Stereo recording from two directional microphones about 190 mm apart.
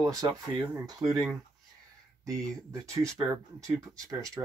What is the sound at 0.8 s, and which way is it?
Speech, centre (ahead or behind).